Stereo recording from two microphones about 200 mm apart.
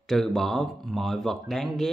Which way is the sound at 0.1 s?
Centre (ahead or behind).